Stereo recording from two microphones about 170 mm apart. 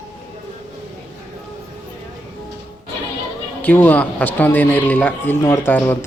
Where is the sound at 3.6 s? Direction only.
10° left (ahead or behind).